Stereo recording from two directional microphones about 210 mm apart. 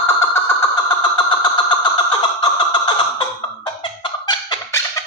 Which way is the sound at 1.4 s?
20° left (ahead or behind).